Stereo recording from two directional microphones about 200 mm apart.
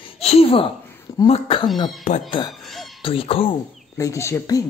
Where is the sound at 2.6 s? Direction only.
Centre (ahead or behind).